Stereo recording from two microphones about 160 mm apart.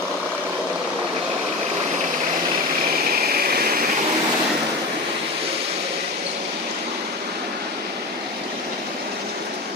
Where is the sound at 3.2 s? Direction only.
70° right (ahead or behind).